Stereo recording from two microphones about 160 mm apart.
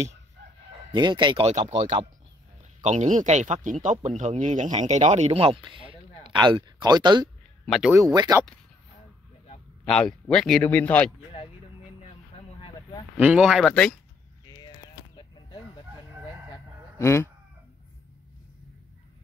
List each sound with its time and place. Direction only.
0.4 s crowing: 90° right
0.9 s speech: 30° right (ahead or behind)
1.5 s speech: 45° right (ahead or behind); by 7.2 s 25° right (ahead or behind)
7.6 s speech: centre (ahead or behind)
7.9 s speech: 25° right (ahead or behind)
9.8 s speech: 5° left (ahead or behind)
12.5 s a sound: 35° left (ahead or behind)
13.2 s speech: 5° right (ahead or behind)
15.1 s a sound: 30° left (ahead or behind)
17.0 s speech: 15° left (ahead or behind)